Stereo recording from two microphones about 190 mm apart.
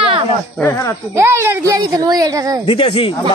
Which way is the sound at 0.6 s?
15° left (ahead or behind).